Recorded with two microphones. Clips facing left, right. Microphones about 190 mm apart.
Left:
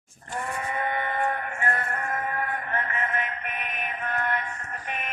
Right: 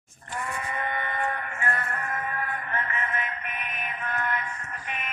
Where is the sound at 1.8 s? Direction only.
45° left (ahead or behind).